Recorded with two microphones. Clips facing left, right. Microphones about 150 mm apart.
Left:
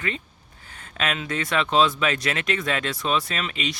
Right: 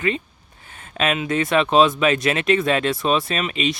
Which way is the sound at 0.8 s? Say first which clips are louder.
Right 6 dB; 20° right (ahead or behind).